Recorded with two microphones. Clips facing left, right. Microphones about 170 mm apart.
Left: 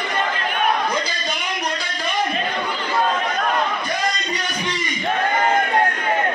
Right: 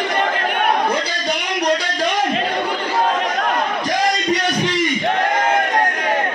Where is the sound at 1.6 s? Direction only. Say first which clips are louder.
Right 8 dB; 70° right (ahead or behind).